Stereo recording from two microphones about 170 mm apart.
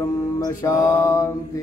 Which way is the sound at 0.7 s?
20° left (ahead or behind).